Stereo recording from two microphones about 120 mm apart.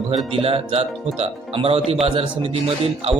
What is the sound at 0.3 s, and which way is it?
Speech, 50° right (ahead or behind).